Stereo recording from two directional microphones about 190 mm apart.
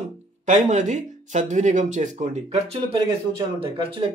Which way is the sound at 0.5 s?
40° right (ahead or behind).